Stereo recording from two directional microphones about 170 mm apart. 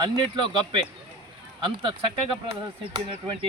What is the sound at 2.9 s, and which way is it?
Speech, 30° right (ahead or behind).